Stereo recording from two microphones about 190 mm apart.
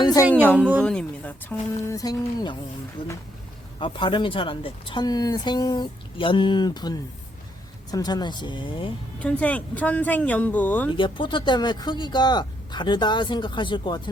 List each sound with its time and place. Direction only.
0.0 s a sound: 20° left (ahead or behind)
0.4 s speech: 5° left (ahead or behind)
3.8 s speech: 25° left (ahead or behind)
9.1 s speech: 5° left (ahead or behind)
10.9 s speech: 25° left (ahead or behind)